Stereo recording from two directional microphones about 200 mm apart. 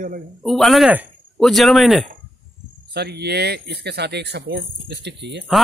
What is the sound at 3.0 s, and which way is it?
Speech, 55° right (ahead or behind).